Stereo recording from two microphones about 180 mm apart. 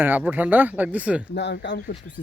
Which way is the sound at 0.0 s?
10° right (ahead or behind).